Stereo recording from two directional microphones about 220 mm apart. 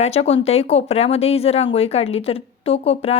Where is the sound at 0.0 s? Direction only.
30° left (ahead or behind).